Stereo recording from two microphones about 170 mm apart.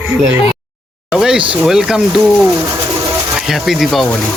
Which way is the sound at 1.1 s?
5° right (ahead or behind).